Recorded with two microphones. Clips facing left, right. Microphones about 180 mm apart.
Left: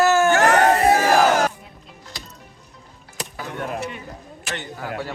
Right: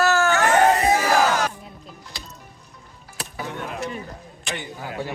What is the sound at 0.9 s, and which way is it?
Battle cry, 45° left (ahead or behind).